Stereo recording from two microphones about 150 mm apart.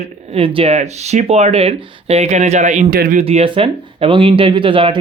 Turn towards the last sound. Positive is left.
turn(degrees=-35)  # may be behind; listen again after turning